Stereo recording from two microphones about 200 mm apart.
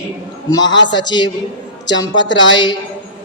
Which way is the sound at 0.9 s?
20° left (ahead or behind).